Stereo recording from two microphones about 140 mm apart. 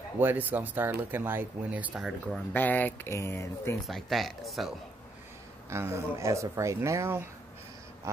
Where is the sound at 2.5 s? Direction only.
15° left (ahead or behind).